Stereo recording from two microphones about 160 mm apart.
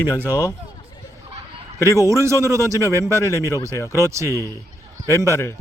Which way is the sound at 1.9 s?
20° right (ahead or behind).